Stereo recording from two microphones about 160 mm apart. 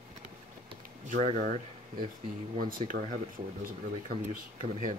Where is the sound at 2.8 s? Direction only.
40° right (ahead or behind).